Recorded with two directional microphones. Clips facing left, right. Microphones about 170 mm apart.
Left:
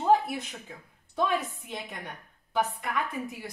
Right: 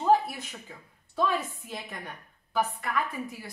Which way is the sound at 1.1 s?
20° left (ahead or behind).